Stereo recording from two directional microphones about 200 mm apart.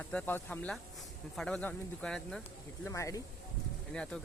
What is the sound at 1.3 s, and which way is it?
Speech, 5° left (ahead or behind).